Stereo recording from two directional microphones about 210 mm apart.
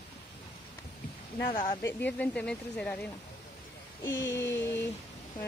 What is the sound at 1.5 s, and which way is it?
Speech, 25° left (ahead or behind).